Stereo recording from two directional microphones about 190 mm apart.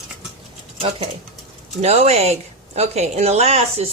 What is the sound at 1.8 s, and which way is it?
A woman's voice, 35° right (ahead or behind).